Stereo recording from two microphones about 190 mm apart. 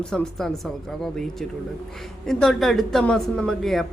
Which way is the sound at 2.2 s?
Centre (ahead or behind).